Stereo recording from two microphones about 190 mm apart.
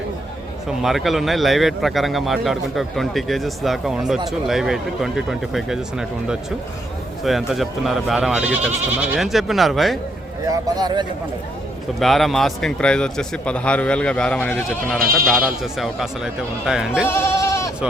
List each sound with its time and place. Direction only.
0.8 s speech: centre (ahead or behind)
10.4 s speech: 20° right (ahead or behind)
11.9 s speech: centre (ahead or behind)
15.0 s speech: 50° right (ahead or behind)
15.4 s speech: centre (ahead or behind)
17.1 s goat: 15° left (ahead or behind)